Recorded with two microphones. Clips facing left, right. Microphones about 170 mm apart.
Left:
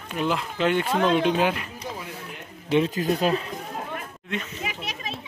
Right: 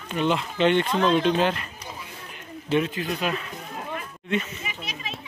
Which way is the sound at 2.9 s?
40° left (ahead or behind).